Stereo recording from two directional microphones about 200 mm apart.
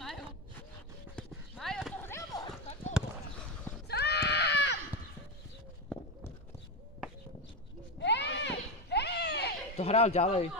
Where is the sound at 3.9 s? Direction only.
55° left (ahead or behind).